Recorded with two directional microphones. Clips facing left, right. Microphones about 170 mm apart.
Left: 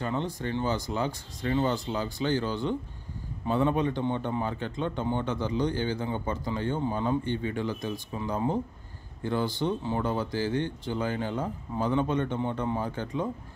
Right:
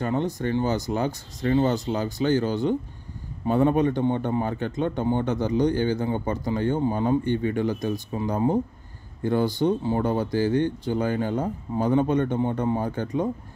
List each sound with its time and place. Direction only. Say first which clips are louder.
0.0 s a man's voice: right 6 dB; 45° right (ahead or behind)